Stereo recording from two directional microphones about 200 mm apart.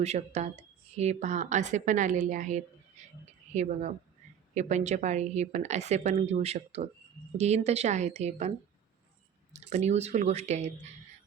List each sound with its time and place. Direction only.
0.0 s speech: 35° right (ahead or behind)
3.0 s a sound: 35° right (ahead or behind)
3.5 s speech: 35° right (ahead or behind)